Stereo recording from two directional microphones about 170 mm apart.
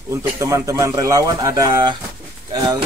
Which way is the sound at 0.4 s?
20° right (ahead or behind).